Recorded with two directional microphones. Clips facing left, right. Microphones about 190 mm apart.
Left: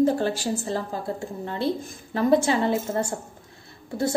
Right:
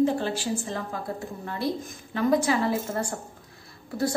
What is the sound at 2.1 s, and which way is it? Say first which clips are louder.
A woman's voice: left 3 dB; 30° left (ahead or behind).